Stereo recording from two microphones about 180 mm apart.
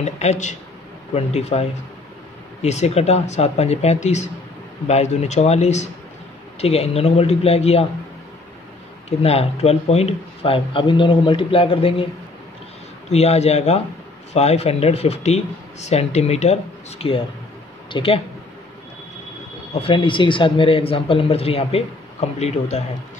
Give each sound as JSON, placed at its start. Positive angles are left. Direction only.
{"t": 0.0, "sound": "speech", "side_deg": 40}
{"t": 9.2, "sound": "speech", "side_deg": 35}
{"t": 13.1, "sound": "speech", "side_deg": 35}
{"t": 19.7, "sound": "speech", "side_deg": 30}